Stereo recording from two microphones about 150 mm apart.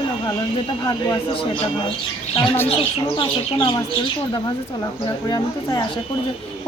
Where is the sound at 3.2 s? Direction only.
35° left (ahead or behind).